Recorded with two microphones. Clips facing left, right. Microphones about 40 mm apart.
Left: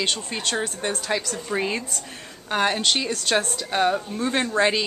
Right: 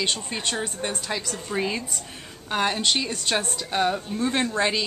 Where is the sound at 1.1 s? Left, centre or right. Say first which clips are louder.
Left 3 dB; centre.